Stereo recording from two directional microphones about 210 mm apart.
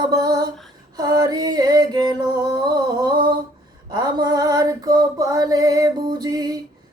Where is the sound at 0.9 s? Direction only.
20° right (ahead or behind).